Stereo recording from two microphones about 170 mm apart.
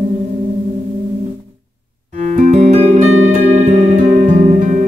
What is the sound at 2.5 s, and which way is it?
Music, 40° right (ahead or behind).